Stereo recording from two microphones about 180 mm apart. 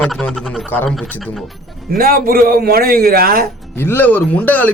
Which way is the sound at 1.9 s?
55° right (ahead or behind).